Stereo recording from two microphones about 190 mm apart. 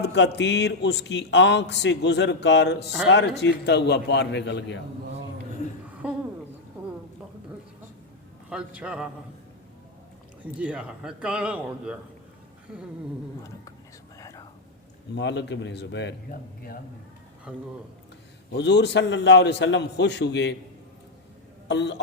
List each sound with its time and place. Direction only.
0.0 s speech: 65° left (ahead or behind)
6.0 s a sound: 5° right (ahead or behind)
8.4 s a man's voice: 5° right (ahead or behind)
10.4 s a man's voice: 5° right (ahead or behind)
14.2 s whispering: 20° left (ahead or behind)
15.1 s a man's voice: 65° left (ahead or behind)
17.5 s a man's voice: 5° right (ahead or behind)
18.5 s a man's voice: 65° left (ahead or behind)
21.7 s speech: 65° left (ahead or behind)